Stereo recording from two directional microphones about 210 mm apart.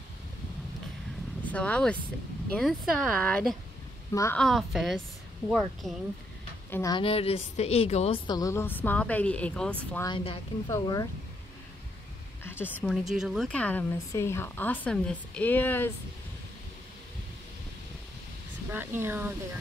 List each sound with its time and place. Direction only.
1.5 s a woman's voice: 5° left (ahead or behind)
4.4 s speech: centre (ahead or behind)
6.7 s a woman's voice: 15° left (ahead or behind)
8.3 s speech: 15° left (ahead or behind)
9.9 s a woman's voice: 20° left (ahead or behind)
12.4 s speech: 10° left (ahead or behind)
12.9 s speech: centre (ahead or behind)
18.7 s speech: 10° right (ahead or behind)